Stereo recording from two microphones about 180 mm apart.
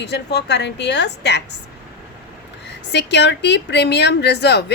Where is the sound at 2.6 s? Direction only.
75° left (ahead or behind).